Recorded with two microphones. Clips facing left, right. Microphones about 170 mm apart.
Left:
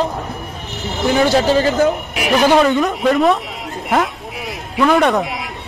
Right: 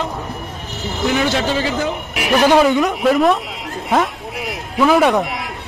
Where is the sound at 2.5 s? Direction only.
Centre (ahead or behind).